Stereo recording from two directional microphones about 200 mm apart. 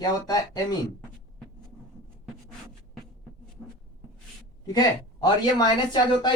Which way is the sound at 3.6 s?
5° right (ahead or behind).